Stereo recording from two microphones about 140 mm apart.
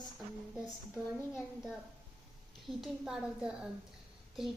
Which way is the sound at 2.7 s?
5° right (ahead or behind).